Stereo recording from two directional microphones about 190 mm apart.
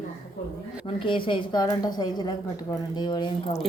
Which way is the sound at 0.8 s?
25° left (ahead or behind).